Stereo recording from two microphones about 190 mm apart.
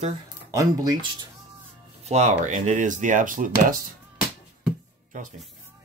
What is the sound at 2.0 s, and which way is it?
Speech, 35° right (ahead or behind).